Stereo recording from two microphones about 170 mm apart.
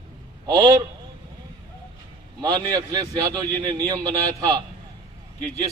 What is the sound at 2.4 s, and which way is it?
A man's voice, 25° right (ahead or behind).